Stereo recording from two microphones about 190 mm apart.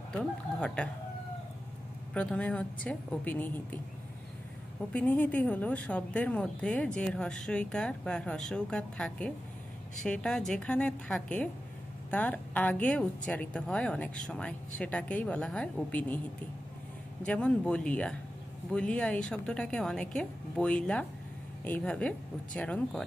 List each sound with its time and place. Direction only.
0.2 s a woman's voice: 5° left (ahead or behind)
2.1 s a woman's voice: 5° left (ahead or behind)
4.9 s a woman's voice: 10° left (ahead or behind)
17.2 s a woman's voice: 5° left (ahead or behind)